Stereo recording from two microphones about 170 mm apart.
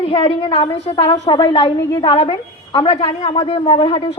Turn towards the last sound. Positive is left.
turn(degrees=30)  # may be behind; listen again after turning